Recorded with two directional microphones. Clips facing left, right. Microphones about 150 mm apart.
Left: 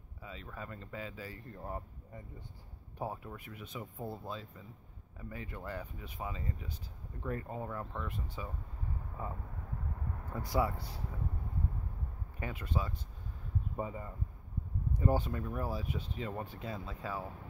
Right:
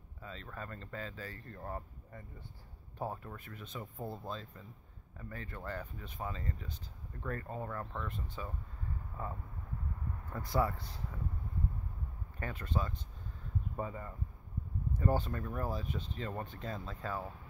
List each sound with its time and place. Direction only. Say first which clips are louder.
0.2 s speech: even; 10° left (ahead or behind)
10.3 s speech: even; 10° left (ahead or behind)
12.4 s speech: even; 10° left (ahead or behind)